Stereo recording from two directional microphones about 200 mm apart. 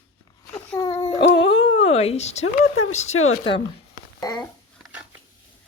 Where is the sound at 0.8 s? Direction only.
15° left (ahead or behind).